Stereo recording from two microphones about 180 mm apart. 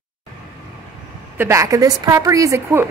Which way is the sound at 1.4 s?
15° right (ahead or behind).